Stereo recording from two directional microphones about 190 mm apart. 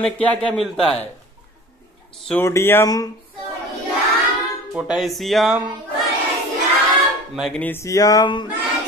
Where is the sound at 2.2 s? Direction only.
10° left (ahead or behind).